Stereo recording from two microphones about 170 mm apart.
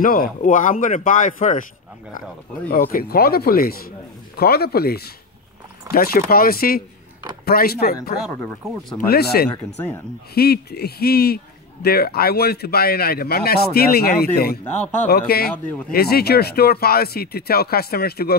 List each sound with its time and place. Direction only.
0.0 s speech: 55° left (ahead or behind)
2.7 s speech: 55° left (ahead or behind)
8.3 s a man's voice: 10° left (ahead or behind)
9.0 s speech: 65° left (ahead or behind)
9.8 s a man's voice: 10° left (ahead or behind)
10.3 s speech: 65° left (ahead or behind)
14.6 s a man's voice: 10° left (ahead or behind)
15.0 s speech: 65° left (ahead or behind)
15.5 s a man's voice: 10° left (ahead or behind)
15.9 s speech: 65° left (ahead or behind)